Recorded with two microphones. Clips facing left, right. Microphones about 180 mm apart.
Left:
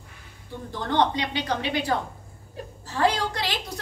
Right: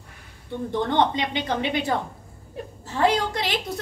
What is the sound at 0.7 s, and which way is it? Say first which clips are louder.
A woman's voice: right 2 dB; 20° right (ahead or behind).